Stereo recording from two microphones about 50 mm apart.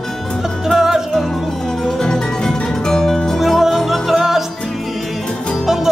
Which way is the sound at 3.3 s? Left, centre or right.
Centre.